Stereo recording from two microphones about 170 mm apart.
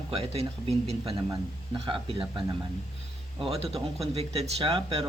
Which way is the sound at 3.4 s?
35° right (ahead or behind).